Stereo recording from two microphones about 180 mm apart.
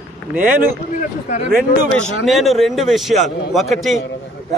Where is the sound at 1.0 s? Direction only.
45° left (ahead or behind).